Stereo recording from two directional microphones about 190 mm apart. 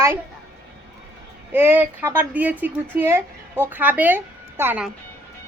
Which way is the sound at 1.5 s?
10° right (ahead or behind).